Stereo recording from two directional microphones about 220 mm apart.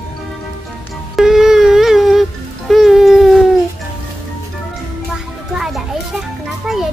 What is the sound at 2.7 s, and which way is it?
Baby cry, centre (ahead or behind).